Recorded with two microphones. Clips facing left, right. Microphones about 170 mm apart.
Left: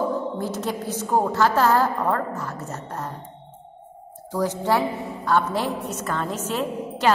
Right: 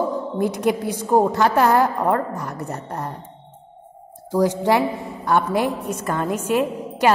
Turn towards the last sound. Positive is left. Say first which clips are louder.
# right 3 dB
turn(degrees=-15)  # may be behind; listen again after turning